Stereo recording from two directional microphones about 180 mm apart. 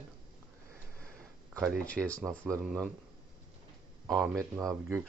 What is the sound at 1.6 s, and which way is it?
Speech, 5° left (ahead or behind).